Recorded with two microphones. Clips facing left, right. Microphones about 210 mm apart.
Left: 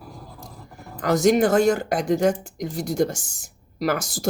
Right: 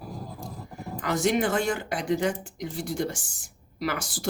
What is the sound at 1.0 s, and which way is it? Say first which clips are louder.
A woman's voice: left 7 dB; 40° left (ahead or behind).